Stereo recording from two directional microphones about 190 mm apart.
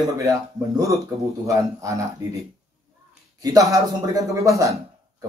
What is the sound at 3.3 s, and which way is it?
Speech, 15° right (ahead or behind).